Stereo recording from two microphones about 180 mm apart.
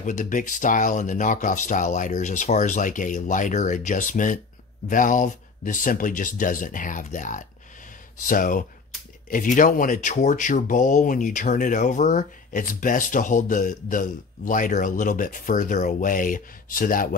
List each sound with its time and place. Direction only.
0.0 s speech: 45° left (ahead or behind)